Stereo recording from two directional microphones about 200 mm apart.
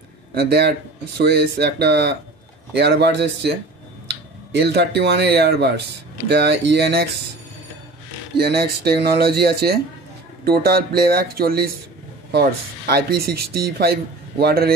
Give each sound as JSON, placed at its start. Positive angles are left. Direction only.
{"t": 0.3, "sound": "speech", "side_deg": -55}
{"t": 8.4, "sound": "speech", "side_deg": -50}